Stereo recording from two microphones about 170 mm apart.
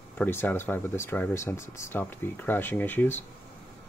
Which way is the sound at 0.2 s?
10° left (ahead or behind).